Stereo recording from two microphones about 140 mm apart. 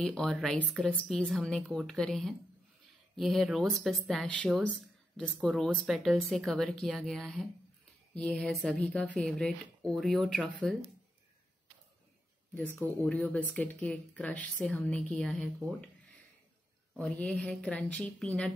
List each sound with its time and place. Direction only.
0.0 s speech: 5° left (ahead or behind)
12.7 s speech: 10° left (ahead or behind)
16.9 s speech: centre (ahead or behind)